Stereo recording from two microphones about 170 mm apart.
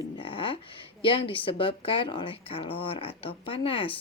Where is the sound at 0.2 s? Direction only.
30° left (ahead or behind).